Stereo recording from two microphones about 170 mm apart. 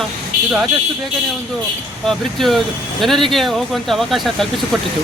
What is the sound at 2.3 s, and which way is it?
Speech, centre (ahead or behind).